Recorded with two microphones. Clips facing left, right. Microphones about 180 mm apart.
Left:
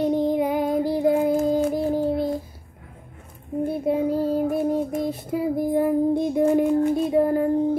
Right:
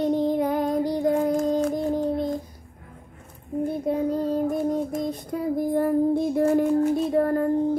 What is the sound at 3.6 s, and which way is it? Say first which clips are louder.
Child singing: left 2 dB; 5° left (ahead or behind).